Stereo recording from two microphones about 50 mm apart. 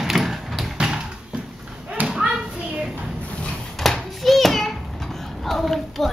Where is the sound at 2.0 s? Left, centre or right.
Centre.